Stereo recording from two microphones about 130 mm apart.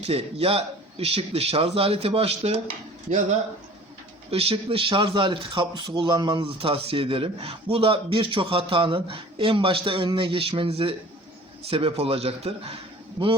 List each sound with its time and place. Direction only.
0.0 s a man's voice: 50° right (ahead or behind)
4.3 s a man's voice: 45° right (ahead or behind)